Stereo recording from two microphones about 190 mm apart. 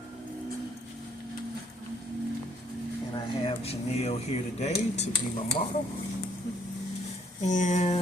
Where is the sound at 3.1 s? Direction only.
30° left (ahead or behind).